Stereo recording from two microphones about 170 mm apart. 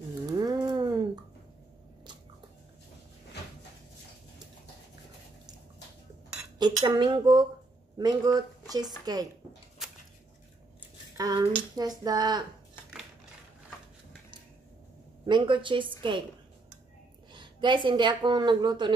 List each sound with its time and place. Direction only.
0.3 s a sound: 20° right (ahead or behind)
6.6 s a woman's voice: 25° right (ahead or behind)
9.8 s a sound: centre (ahead or behind)
11.1 s a woman's voice: 20° right (ahead or behind)
15.2 s a woman's voice: 30° right (ahead or behind)
17.3 s a woman's voice: 30° right (ahead or behind)